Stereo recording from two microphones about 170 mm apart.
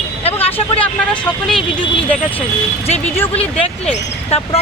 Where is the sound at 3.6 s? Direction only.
35° left (ahead or behind).